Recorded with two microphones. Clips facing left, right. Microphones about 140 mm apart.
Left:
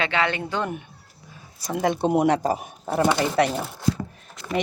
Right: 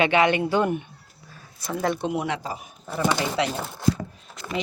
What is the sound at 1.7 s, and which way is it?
Speech, 20° left (ahead or behind).